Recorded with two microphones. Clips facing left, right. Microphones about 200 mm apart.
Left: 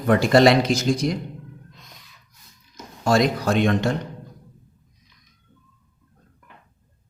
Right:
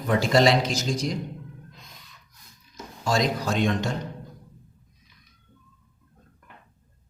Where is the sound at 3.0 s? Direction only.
60° left (ahead or behind).